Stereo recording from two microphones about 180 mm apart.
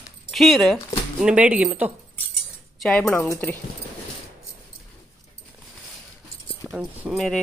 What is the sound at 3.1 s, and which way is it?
Speech, 15° left (ahead or behind).